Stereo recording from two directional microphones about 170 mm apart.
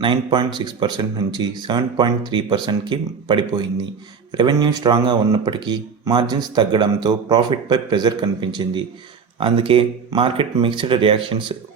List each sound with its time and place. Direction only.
0.0 s speech: 30° right (ahead or behind)